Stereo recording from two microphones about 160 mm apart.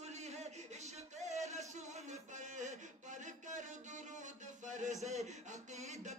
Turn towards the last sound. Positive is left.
turn(degrees=-45)  # may be behind; listen again after turning